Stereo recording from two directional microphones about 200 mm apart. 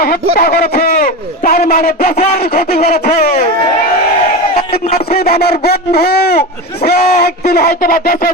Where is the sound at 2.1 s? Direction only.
30° left (ahead or behind).